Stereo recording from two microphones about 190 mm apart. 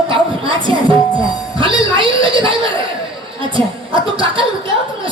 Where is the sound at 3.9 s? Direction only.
25° right (ahead or behind).